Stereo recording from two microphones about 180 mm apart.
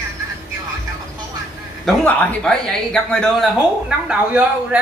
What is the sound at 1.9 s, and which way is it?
Speech, 5° left (ahead or behind).